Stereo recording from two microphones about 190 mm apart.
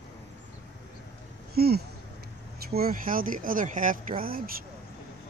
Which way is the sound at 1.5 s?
55° right (ahead or behind).